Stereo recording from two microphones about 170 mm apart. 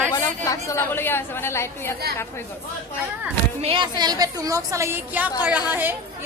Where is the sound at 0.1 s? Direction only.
20° left (ahead or behind).